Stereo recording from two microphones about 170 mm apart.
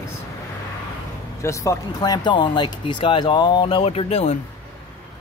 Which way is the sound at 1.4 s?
20° left (ahead or behind).